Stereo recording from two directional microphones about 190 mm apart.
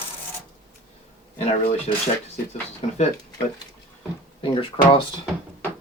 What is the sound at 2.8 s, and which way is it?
Speech, 30° left (ahead or behind).